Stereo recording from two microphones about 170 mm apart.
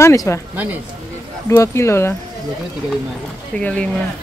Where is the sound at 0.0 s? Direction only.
20° left (ahead or behind).